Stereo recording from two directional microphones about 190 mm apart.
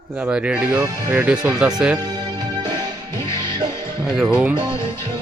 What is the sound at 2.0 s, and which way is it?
Music, 20° right (ahead or behind).